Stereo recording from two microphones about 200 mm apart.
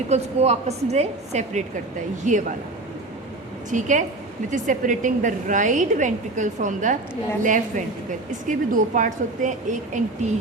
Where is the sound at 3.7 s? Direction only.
40° right (ahead or behind).